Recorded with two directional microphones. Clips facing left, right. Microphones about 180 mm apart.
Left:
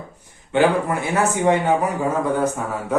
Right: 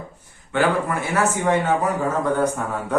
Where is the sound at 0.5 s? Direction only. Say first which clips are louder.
Left 3 dB; 20° left (ahead or behind).